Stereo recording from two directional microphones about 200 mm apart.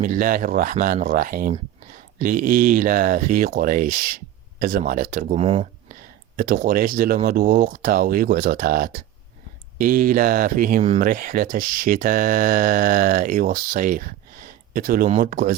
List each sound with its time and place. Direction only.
0.0 s speech: 40° right (ahead or behind)
6.3 s speech: 45° right (ahead or behind)